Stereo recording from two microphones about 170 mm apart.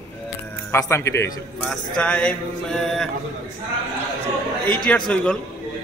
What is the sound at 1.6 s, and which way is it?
Mantra, 5° left (ahead or behind).